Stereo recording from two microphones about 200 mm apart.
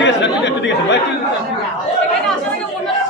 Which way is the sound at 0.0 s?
60° left (ahead or behind).